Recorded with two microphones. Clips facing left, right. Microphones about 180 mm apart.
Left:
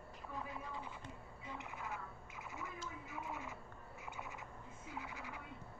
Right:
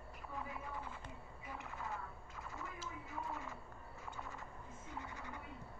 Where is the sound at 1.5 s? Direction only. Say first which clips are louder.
Even; 15° left (ahead or behind).